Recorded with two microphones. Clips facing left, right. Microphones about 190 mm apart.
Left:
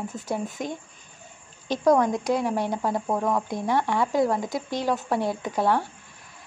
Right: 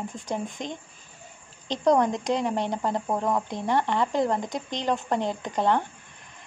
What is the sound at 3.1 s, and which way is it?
Speech, 10° right (ahead or behind).